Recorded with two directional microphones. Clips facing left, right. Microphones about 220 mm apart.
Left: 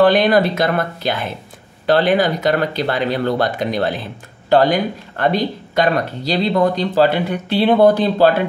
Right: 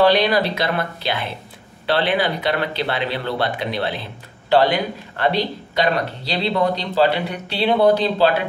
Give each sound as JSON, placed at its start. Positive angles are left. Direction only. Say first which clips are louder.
{"t": 0.0, "sound": "speech", "louder": "left 3 dB", "side_deg": 50}